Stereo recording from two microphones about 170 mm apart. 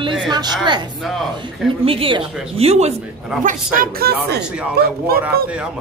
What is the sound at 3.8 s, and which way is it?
Speech, 60° right (ahead or behind).